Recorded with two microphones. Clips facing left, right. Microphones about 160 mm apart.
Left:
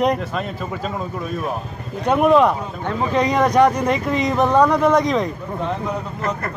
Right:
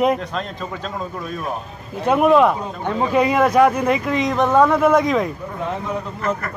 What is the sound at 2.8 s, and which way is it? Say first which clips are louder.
Speech: right 2 dB; 15° right (ahead or behind).